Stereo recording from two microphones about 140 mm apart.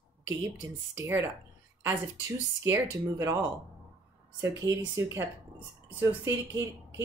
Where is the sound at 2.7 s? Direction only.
20° right (ahead or behind).